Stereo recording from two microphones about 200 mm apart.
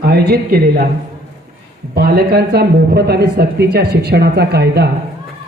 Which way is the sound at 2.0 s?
50° right (ahead or behind).